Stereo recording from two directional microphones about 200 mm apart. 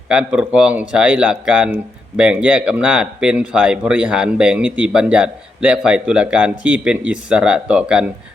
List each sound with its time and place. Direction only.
0.1 s speech: 5° right (ahead or behind)